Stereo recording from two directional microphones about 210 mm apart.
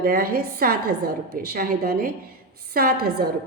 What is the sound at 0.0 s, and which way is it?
A woman's voice, 45° right (ahead or behind).